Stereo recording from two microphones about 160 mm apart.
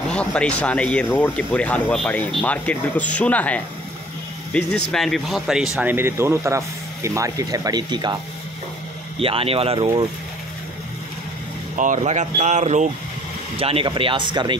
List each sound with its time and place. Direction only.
0.1 s speech: 5° left (ahead or behind); by 8.2 s 25° right (ahead or behind)
9.2 s speech: 35° right (ahead or behind)
11.7 s speech: 50° right (ahead or behind)
13.6 s speech: 35° right (ahead or behind)